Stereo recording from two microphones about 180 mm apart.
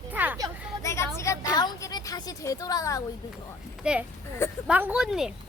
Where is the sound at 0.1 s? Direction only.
10° right (ahead or behind).